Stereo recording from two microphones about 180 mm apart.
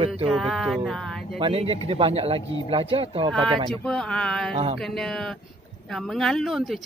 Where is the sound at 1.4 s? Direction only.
30° right (ahead or behind).